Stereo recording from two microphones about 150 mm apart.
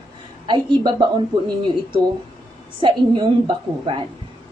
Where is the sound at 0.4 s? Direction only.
30° right (ahead or behind).